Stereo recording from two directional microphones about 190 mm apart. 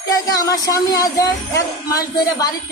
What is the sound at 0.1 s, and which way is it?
A child's voice, 20° left (ahead or behind).